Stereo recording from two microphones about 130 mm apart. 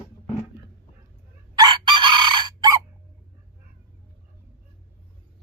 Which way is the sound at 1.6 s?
35° right (ahead or behind).